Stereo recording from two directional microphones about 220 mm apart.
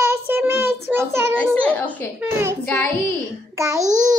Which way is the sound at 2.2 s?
10° right (ahead or behind).